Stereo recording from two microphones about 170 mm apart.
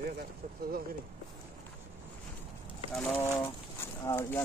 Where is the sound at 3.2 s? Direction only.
15° left (ahead or behind).